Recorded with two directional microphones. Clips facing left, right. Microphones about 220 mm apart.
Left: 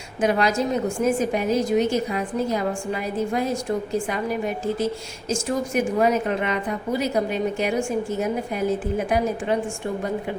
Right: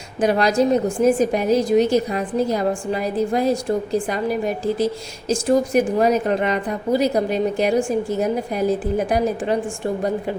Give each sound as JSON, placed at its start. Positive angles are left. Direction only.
{"t": 0.2, "sound": "a woman's voice", "side_deg": -35}